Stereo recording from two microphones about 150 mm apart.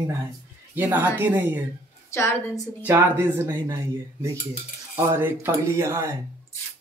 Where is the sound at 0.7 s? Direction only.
10° right (ahead or behind).